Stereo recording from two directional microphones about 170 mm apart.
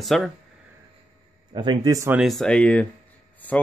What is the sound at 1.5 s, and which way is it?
Speech, 25° right (ahead or behind).